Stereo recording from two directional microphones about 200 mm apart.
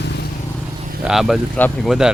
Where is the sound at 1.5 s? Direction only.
10° left (ahead or behind).